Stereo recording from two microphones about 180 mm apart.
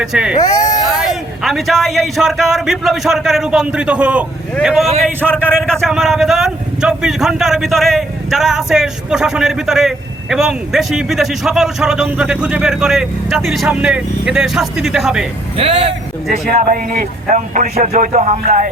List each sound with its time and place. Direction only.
0.0 s speech: 5° right (ahead or behind)
0.3 s speech: 20° left (ahead or behind)
0.9 s speech: centre (ahead or behind)
15.5 s a man's voice: 35° right (ahead or behind)
16.5 s a man's voice: 45° right (ahead or behind)